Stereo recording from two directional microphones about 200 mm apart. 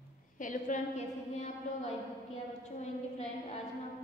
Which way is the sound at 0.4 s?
40° left (ahead or behind).